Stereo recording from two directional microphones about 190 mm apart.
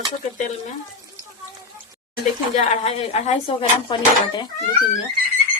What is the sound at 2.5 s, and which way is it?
Speech, 35° left (ahead or behind).